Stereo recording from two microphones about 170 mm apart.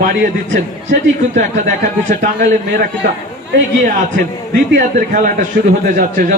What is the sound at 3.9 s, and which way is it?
Speech, 50° right (ahead or behind).